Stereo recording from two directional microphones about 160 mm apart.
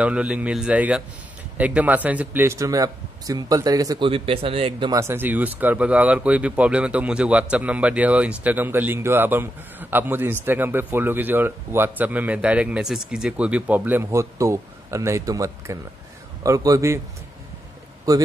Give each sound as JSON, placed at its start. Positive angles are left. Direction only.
{"t": 0.0, "sound": "a man's voice", "side_deg": -5}
{"t": 4.1, "sound": "speech", "side_deg": -35}
{"t": 4.9, "sound": "a man's voice", "side_deg": -15}
{"t": 18.1, "sound": "a man's voice", "side_deg": -25}